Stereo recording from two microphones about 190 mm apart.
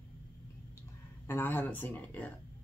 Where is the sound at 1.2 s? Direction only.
10° left (ahead or behind).